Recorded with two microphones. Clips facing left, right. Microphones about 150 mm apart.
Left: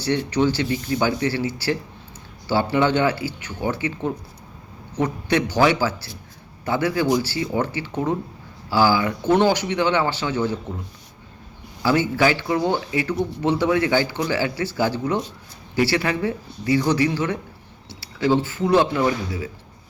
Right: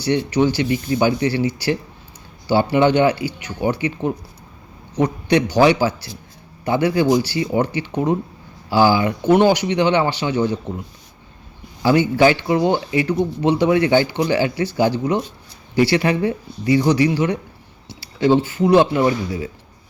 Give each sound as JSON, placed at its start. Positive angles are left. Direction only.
{"t": 0.0, "sound": "speech", "side_deg": -15}
{"t": 11.8, "sound": "speech", "side_deg": -20}